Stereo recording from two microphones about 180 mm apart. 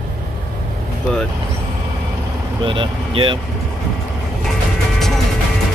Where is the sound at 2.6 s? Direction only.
25° right (ahead or behind).